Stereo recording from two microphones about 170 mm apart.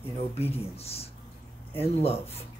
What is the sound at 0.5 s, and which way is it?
Speech, 35° left (ahead or behind).